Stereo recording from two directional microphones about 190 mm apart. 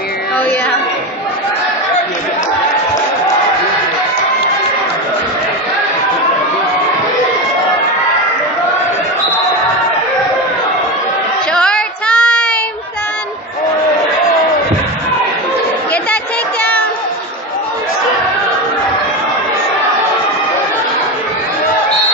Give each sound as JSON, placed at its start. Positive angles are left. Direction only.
{"t": 11.5, "sound": "child singing", "side_deg": 5}